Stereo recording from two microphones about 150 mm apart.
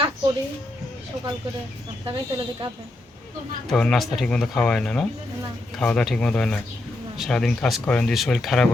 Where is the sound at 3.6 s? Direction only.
Centre (ahead or behind).